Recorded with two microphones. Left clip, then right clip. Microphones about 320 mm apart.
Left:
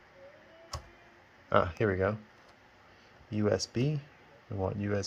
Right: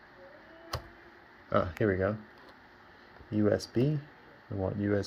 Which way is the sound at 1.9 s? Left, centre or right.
Left.